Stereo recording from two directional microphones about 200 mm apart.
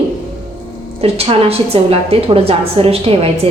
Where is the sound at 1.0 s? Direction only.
30° right (ahead or behind).